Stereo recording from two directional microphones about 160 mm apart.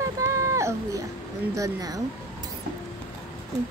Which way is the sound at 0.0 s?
20° right (ahead or behind).